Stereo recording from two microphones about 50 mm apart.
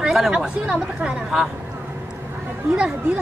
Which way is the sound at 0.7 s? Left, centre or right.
Centre.